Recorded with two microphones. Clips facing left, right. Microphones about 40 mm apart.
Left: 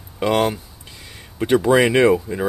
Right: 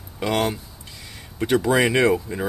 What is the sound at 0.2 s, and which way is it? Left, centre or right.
Speech, centre.